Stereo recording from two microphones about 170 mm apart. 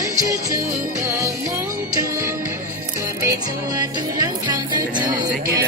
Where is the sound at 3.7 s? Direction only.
25° right (ahead or behind).